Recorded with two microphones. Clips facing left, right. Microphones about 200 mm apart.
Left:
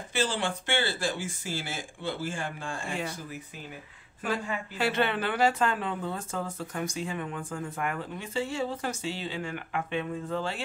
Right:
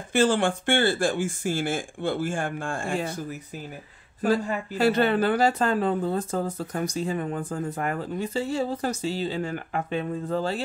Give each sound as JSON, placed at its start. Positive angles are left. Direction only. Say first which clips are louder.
{"t": 0.1, "sound": "speech", "louder": "right 8 dB", "side_deg": -50}